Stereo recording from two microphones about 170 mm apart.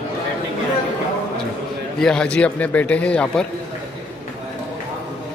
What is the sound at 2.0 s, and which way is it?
A man's voice, 5° left (ahead or behind).